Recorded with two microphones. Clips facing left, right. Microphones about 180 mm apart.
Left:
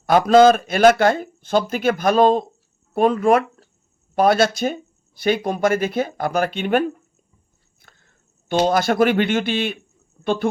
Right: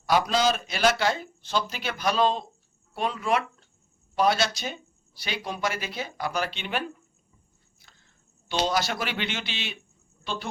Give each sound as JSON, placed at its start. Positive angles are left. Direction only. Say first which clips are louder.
{"t": 0.0, "sound": "speech", "louder": "left 11 dB", "side_deg": 50}